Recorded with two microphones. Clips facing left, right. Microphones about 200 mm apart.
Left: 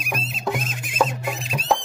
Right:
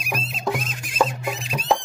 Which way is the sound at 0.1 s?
Centre (ahead or behind).